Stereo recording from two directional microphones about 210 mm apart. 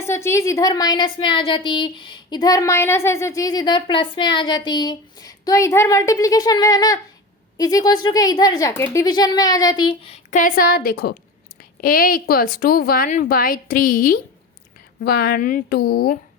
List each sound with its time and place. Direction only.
0.0 s a woman's voice: 10° left (ahead or behind); by 16.1 s 45° left (ahead or behind)